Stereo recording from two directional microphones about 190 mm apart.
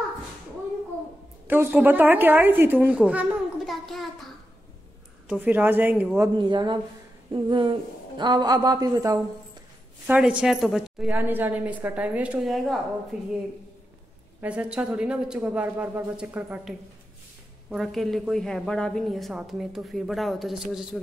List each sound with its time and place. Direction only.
1.5 s speech: 10° right (ahead or behind)
5.3 s a woman's voice: 10° right (ahead or behind)
6.3 s speech: 25° right (ahead or behind)
10.0 s a woman's voice: 5° right (ahead or behind)
14.4 s a woman's voice: 5° right (ahead or behind)